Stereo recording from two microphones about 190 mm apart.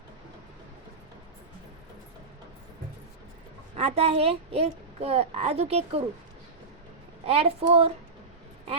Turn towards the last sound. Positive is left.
turn(degrees=-30)  # may be behind; listen again after turning